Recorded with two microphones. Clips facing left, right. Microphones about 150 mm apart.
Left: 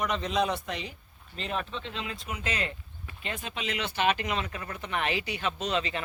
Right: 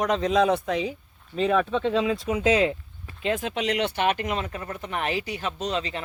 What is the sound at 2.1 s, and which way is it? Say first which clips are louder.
Speech: right 13 dB; 90° right.